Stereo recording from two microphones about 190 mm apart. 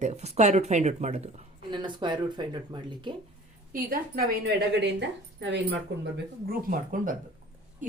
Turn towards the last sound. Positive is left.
turn(degrees=-45)  # may be behind; listen again after turning